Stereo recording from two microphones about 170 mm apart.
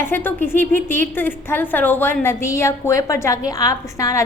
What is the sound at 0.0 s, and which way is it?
A woman's voice, 15° left (ahead or behind).